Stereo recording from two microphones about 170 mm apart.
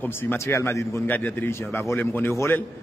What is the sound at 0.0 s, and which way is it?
A man's voice, 10° left (ahead or behind).